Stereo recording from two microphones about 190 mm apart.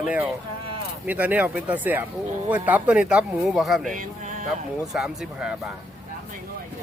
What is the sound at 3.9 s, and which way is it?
Speech, 45° right (ahead or behind).